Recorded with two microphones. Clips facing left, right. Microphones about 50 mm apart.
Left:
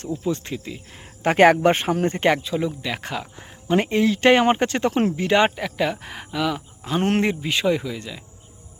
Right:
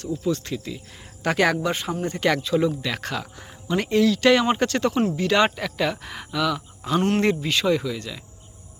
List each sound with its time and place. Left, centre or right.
0.1 s speech: centre; by 2.0 s left
2.0 s speech: left
2.4 s speech: centre
3.7 s speech: left